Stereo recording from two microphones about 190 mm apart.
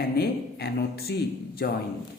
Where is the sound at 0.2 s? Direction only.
55° left (ahead or behind).